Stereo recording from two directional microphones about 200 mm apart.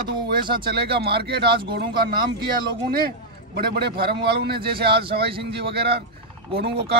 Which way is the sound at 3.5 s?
50° right (ahead or behind).